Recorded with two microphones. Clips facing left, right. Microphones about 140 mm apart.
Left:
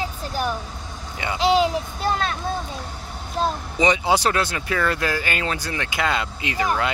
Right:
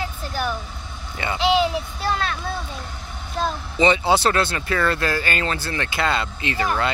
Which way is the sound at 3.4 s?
10° left (ahead or behind).